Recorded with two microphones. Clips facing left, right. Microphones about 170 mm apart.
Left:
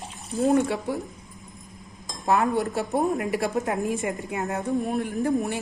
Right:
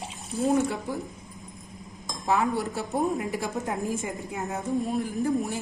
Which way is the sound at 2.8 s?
65° left (ahead or behind).